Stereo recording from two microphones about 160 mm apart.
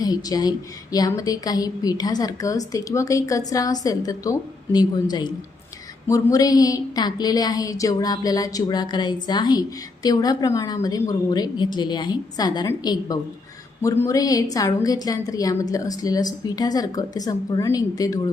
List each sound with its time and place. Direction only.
0.0 s a woman's voice: 25° left (ahead or behind)